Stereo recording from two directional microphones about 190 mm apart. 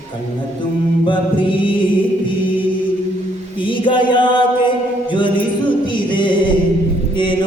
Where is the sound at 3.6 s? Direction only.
25° left (ahead or behind).